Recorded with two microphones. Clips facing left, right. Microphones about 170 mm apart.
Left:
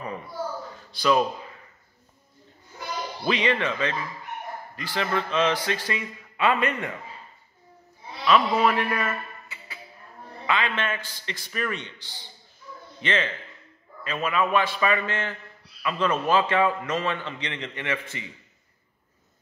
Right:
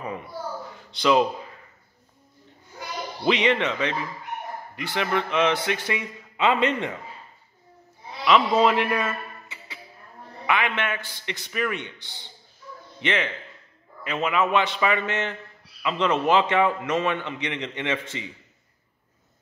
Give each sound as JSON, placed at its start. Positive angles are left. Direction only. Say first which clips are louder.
{"t": 0.9, "sound": "a man's voice", "louder": "right 2 dB", "side_deg": -20}
{"t": 3.3, "sound": "a man's voice", "louder": "right 3 dB", "side_deg": -20}
{"t": 8.3, "sound": "a man's voice", "louder": "right 2 dB", "side_deg": -20}
{"t": 13.0, "sound": "a man's voice", "louder": "right 1 dB", "side_deg": -15}